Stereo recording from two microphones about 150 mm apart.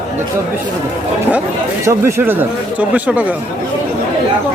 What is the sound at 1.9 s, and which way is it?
Speech, 15° right (ahead or behind).